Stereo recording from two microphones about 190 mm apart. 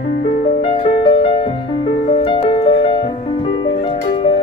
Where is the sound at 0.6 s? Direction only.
30° left (ahead or behind).